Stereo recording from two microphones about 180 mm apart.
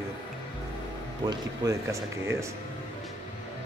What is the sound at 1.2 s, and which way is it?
Speech, 20° right (ahead or behind).